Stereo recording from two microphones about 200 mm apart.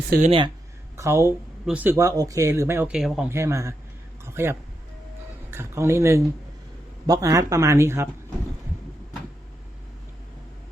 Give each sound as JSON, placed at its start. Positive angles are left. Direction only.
{"t": 0.3, "sound": "speech", "side_deg": -25}
{"t": 0.9, "sound": "speech", "side_deg": -15}
{"t": 3.2, "sound": "a man's voice", "side_deg": -15}